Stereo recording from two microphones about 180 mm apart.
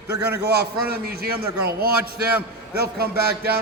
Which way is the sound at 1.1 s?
60° right (ahead or behind).